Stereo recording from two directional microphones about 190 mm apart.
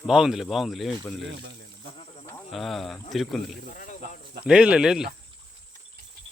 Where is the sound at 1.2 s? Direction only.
70° right (ahead or behind).